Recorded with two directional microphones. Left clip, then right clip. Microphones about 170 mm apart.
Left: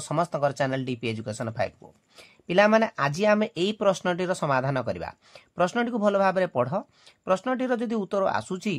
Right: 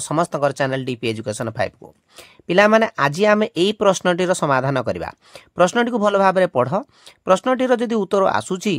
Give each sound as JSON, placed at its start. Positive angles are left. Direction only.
{"t": 0.1, "sound": "speech", "side_deg": -35}